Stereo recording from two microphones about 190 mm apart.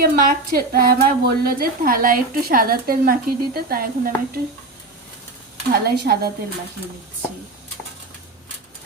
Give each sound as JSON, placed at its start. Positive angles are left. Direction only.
{"t": 0.0, "sound": "a woman's voice", "side_deg": -50}
{"t": 5.8, "sound": "speech", "side_deg": -55}